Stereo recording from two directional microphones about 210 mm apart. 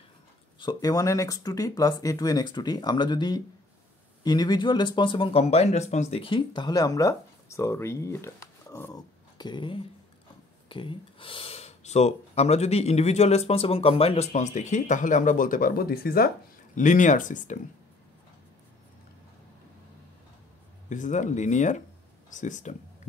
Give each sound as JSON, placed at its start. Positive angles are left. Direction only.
{"t": 0.6, "sound": "speech", "side_deg": 20}
{"t": 20.9, "sound": "speech", "side_deg": 35}